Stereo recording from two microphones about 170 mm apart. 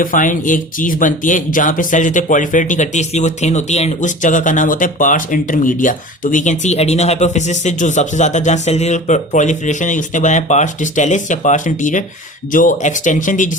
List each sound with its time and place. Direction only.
0.0 s speech: 50° left (ahead or behind)